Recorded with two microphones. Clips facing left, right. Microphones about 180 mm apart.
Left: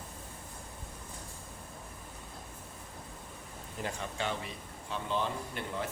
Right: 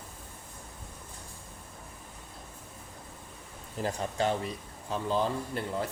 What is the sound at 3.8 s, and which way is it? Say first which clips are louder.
A man's voice: right 7 dB; 40° right (ahead or behind).